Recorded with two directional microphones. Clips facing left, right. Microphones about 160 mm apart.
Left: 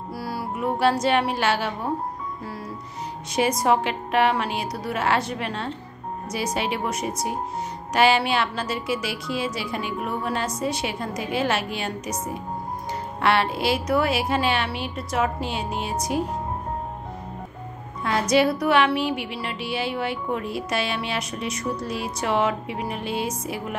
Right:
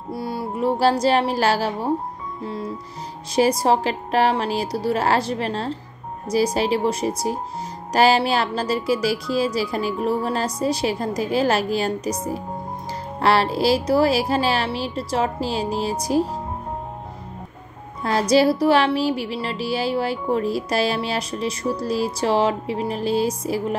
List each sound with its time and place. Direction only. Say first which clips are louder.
0.1 s speech: right 4 dB; 25° right (ahead or behind)
2.4 s music: right 5 dB; 25° right (ahead or behind)
13.2 s music: right 4 dB; 35° right (ahead or behind)
18.3 s music: right 4 dB; 35° right (ahead or behind)